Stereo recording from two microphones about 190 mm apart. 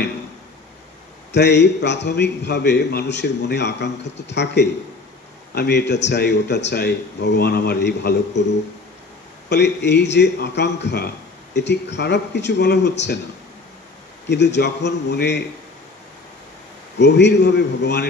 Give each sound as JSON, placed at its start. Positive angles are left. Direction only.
{"t": 1.3, "sound": "a man's voice", "side_deg": 65}
{"t": 9.5, "sound": "a man's voice", "side_deg": 65}
{"t": 14.3, "sound": "a man's voice", "side_deg": 65}
{"t": 17.0, "sound": "a man's voice", "side_deg": 65}